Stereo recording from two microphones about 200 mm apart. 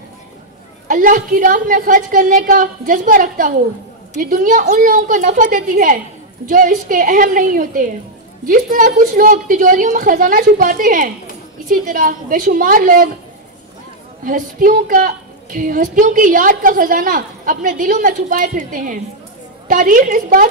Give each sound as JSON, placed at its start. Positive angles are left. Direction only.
{"t": 0.8, "sound": "a woman's voice", "side_deg": -40}
{"t": 14.2, "sound": "a woman's voice", "side_deg": -45}